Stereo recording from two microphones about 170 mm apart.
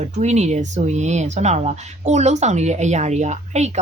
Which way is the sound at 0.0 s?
40° right (ahead or behind).